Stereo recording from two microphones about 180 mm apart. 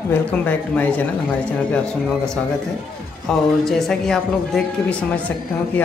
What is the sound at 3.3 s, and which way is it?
Speech, centre (ahead or behind).